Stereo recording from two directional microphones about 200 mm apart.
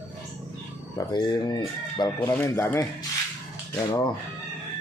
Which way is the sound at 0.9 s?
20° left (ahead or behind).